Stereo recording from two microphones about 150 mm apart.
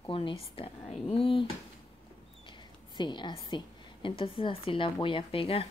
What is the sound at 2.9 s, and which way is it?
Speech, 30° left (ahead or behind).